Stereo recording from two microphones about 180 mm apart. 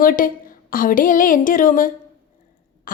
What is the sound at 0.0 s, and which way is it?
A woman's voice, 50° left (ahead or behind).